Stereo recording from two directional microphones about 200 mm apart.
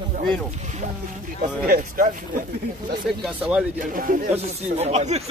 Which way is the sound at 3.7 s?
40° right (ahead or behind).